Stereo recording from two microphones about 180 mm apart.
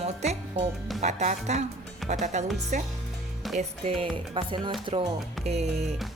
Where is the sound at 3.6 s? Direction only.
30° right (ahead or behind).